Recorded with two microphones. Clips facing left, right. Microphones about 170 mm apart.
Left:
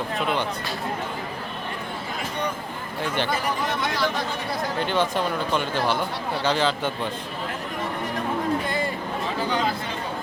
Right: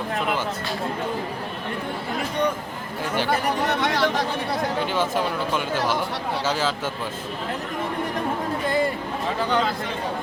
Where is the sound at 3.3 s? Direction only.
70° right (ahead or behind).